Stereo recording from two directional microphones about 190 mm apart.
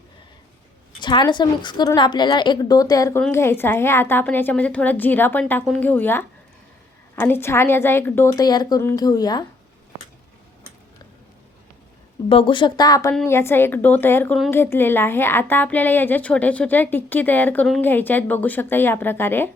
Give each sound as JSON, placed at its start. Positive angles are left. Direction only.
{"t": 0.9, "sound": "a woman's voice", "side_deg": 25}
{"t": 12.3, "sound": "a woman's voice", "side_deg": 25}